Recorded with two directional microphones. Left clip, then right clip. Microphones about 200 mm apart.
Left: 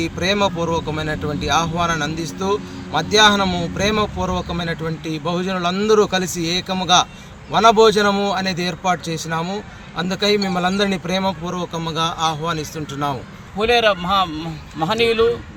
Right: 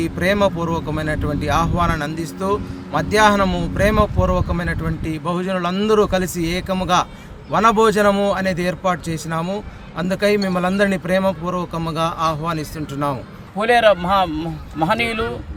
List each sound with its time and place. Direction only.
0.0 s speech: 10° right (ahead or behind)